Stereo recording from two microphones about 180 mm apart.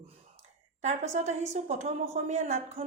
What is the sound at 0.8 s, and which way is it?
A woman's voice, 40° right (ahead or behind).